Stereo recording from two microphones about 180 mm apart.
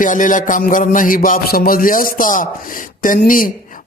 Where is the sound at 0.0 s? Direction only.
45° left (ahead or behind).